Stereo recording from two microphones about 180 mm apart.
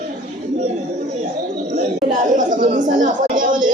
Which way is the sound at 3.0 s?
45° right (ahead or behind).